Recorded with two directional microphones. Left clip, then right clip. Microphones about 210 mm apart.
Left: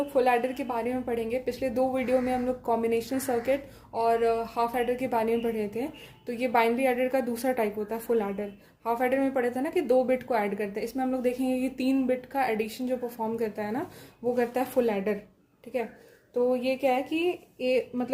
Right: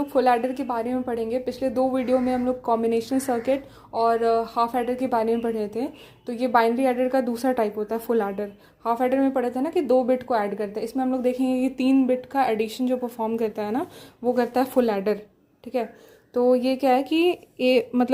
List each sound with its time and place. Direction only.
0.1 s a woman's voice: 35° right (ahead or behind)
16.3 s a woman's voice: 35° right (ahead or behind)